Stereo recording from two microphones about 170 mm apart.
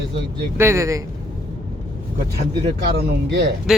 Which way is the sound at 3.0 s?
70° right (ahead or behind).